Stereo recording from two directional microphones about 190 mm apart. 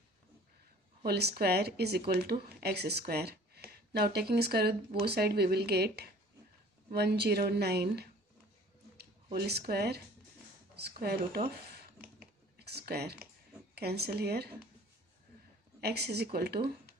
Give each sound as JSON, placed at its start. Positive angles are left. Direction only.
{"t": 1.0, "sound": "speech", "side_deg": -55}
{"t": 12.2, "sound": "typing", "side_deg": -55}
{"t": 13.7, "sound": "speech", "side_deg": -60}
{"t": 15.8, "sound": "speech", "side_deg": -60}